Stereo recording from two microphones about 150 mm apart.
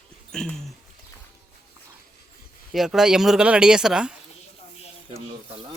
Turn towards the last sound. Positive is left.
turn(degrees=-5)  # may be behind; listen again after turning